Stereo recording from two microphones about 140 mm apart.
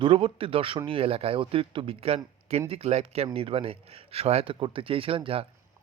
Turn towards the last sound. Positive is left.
turn(degrees=-40)  # may be behind; listen again after turning